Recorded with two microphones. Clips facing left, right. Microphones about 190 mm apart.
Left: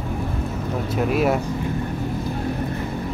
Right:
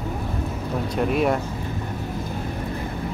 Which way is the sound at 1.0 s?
5° left (ahead or behind).